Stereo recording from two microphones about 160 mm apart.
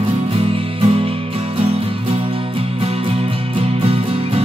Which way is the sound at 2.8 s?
35° right (ahead or behind).